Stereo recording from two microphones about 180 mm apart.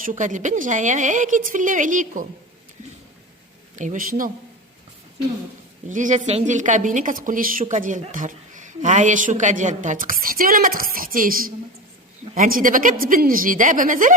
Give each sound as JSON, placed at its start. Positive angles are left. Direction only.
{"t": 0.0, "sound": "a woman's voice", "side_deg": -45}
{"t": 3.8, "sound": "a woman's voice", "side_deg": -45}
{"t": 5.9, "sound": "a woman's voice", "side_deg": -45}
{"t": 12.2, "sound": "a sound", "side_deg": -40}
{"t": 12.5, "sound": "a woman's voice", "side_deg": -50}